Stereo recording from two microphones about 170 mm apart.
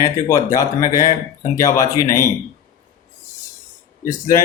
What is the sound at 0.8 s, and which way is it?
Speech, 55° left (ahead or behind).